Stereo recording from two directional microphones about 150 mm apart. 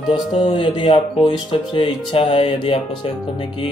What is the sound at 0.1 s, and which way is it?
Speech, 35° left (ahead or behind).